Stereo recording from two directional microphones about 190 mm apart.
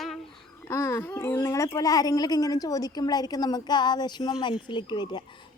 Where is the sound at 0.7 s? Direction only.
15° left (ahead or behind).